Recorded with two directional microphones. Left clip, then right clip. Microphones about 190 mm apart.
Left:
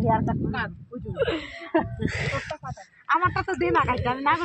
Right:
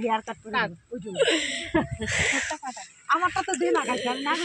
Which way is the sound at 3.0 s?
40° right (ahead or behind).